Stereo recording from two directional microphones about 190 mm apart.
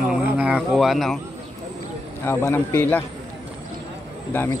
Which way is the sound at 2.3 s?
15° left (ahead or behind).